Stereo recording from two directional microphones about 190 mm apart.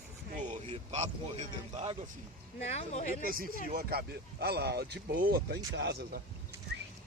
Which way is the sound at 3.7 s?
55° right (ahead or behind).